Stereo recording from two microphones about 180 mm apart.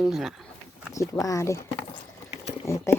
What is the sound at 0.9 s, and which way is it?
Speech, 15° left (ahead or behind).